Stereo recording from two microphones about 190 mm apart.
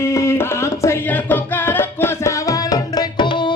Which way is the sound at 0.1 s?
15° left (ahead or behind).